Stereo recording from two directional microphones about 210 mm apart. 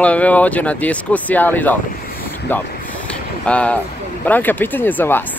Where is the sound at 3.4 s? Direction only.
5° left (ahead or behind).